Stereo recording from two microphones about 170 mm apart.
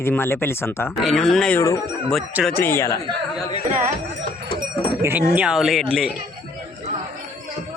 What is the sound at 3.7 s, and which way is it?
Speech, 45° right (ahead or behind).